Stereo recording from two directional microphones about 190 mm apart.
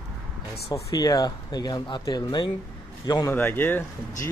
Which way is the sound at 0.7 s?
20° left (ahead or behind).